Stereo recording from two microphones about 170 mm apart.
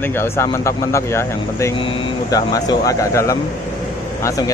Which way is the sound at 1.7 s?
30° left (ahead or behind).